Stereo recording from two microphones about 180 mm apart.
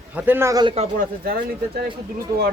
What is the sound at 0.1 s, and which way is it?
Speech, 10° right (ahead or behind).